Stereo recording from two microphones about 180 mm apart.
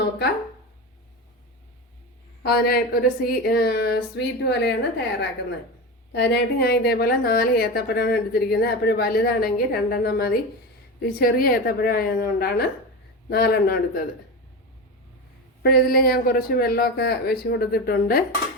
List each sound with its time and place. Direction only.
2.4 s a woman's voice: 60° left (ahead or behind)
15.6 s a woman's voice: 60° left (ahead or behind)